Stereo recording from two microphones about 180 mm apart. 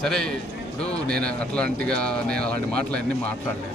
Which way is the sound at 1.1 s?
55° right (ahead or behind).